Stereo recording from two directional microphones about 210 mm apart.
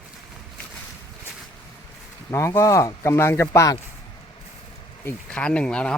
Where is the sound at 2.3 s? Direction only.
15° left (ahead or behind).